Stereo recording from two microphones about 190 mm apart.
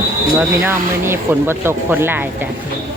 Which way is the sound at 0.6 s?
10° right (ahead or behind).